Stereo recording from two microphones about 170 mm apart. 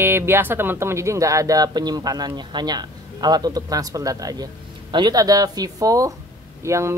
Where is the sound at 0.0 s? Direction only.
15° right (ahead or behind).